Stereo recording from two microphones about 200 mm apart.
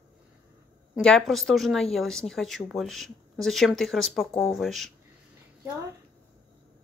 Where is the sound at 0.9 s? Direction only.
Centre (ahead or behind).